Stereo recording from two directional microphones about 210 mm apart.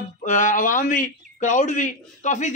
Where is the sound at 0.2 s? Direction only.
40° left (ahead or behind).